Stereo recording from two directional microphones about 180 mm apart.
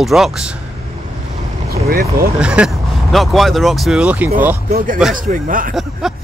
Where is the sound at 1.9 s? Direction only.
55° right (ahead or behind).